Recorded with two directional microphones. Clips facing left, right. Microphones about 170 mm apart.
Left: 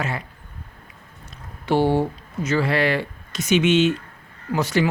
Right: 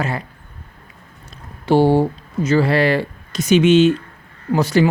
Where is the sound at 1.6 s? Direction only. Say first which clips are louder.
Right 5 dB; 30° right (ahead or behind).